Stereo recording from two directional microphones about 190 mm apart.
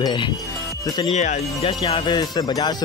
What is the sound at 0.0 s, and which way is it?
Speech, 25° left (ahead or behind).